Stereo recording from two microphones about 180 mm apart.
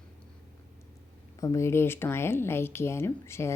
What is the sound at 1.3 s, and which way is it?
Speech, 15° left (ahead or behind).